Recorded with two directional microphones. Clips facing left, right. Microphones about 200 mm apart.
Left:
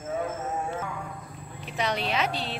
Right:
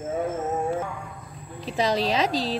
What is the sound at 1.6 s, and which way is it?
Speech, 35° right (ahead or behind).